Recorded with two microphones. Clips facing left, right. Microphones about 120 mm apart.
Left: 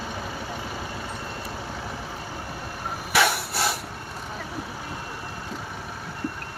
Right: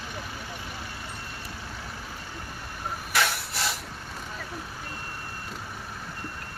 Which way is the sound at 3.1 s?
65° left (ahead or behind).